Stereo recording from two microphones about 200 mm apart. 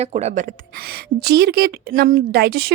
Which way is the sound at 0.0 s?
30° right (ahead or behind).